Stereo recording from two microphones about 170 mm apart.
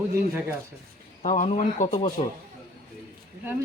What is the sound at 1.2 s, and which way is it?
Speech, 45° left (ahead or behind).